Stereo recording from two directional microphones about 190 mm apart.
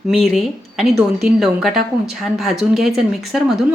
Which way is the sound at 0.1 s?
Centre (ahead or behind).